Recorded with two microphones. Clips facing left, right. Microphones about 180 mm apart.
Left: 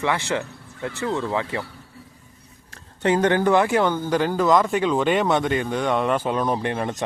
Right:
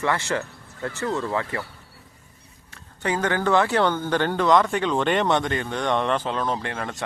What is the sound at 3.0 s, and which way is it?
Speech, 25° left (ahead or behind).